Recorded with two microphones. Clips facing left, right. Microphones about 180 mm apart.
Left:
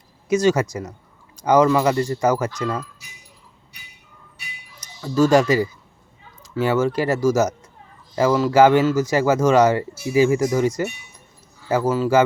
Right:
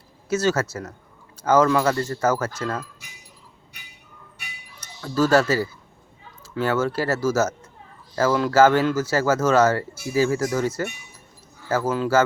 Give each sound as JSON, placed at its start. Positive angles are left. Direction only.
{"t": 0.3, "sound": "speech", "side_deg": 15}
{"t": 4.9, "sound": "speech", "side_deg": 10}